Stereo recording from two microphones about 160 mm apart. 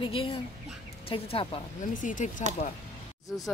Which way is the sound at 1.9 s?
55° left (ahead or behind).